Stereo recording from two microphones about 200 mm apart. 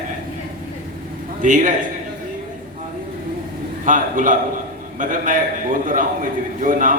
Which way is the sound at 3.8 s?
40° right (ahead or behind).